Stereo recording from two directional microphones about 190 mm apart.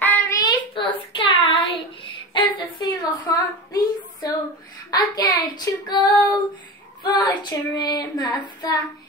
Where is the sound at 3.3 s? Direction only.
20° left (ahead or behind).